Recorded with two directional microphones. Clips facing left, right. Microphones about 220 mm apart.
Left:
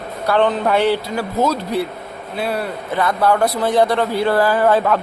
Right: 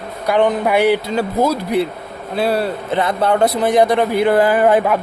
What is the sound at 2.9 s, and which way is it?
A man's voice, 20° right (ahead or behind).